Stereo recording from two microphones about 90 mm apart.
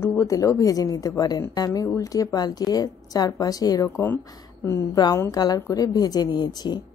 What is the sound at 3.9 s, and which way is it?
Speech, 25° left (ahead or behind).